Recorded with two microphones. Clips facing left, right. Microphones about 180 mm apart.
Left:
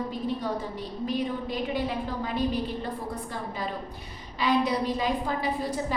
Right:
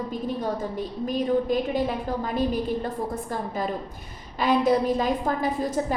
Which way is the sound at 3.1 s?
45° right (ahead or behind).